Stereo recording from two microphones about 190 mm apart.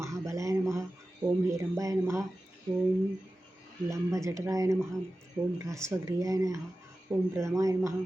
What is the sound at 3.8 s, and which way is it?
Speech, 15° right (ahead or behind).